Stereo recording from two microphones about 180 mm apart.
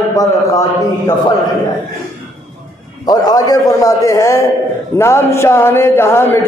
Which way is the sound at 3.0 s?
20° left (ahead or behind).